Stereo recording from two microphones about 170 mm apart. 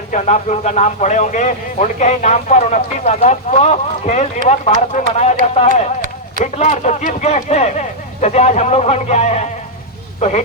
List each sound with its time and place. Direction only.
0.1 s speech: 45° left (ahead or behind)
6.4 s speech: 40° left (ahead or behind)